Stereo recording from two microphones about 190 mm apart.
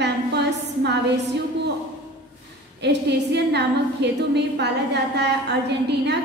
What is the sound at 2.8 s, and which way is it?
A woman's voice, 65° right (ahead or behind).